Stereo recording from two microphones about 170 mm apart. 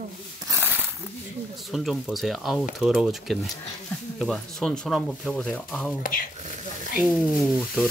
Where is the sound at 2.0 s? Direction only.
Centre (ahead or behind).